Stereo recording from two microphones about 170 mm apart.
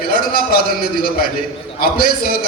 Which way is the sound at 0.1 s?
60° left (ahead or behind).